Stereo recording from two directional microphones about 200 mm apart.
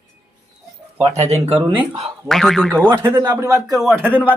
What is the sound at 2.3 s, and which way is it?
Speech, centre (ahead or behind).